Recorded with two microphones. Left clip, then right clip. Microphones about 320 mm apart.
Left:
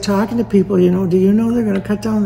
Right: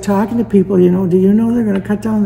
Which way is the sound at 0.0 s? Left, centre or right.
Centre.